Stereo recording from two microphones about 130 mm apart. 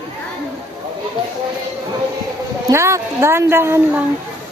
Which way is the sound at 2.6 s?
20° right (ahead or behind).